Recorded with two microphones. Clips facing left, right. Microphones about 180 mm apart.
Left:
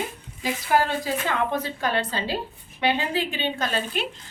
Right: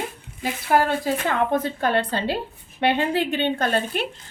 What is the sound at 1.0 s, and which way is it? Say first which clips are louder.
A woman's voice: right 3 dB; 55° right (ahead or behind).